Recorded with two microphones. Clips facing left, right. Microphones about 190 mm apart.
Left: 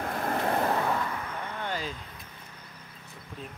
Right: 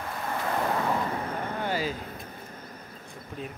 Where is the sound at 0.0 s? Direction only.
55° left (ahead or behind).